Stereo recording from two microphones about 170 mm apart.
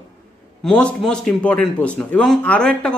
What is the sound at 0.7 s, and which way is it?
Speech, 5° left (ahead or behind).